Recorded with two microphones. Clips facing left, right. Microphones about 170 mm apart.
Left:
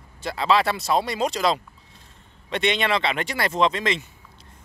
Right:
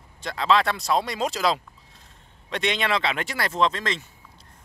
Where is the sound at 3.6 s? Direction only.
15° left (ahead or behind).